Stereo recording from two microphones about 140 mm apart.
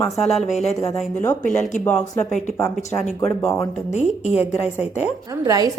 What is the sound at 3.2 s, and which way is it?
Speech, 20° left (ahead or behind).